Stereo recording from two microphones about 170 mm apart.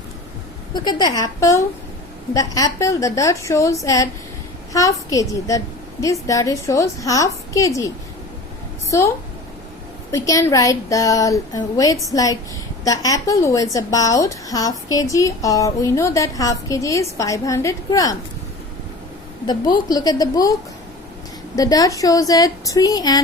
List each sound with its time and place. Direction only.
0.7 s a woman's voice: 25° left (ahead or behind)
10.1 s a woman's voice: 20° left (ahead or behind)
19.5 s a woman's voice: 25° left (ahead or behind)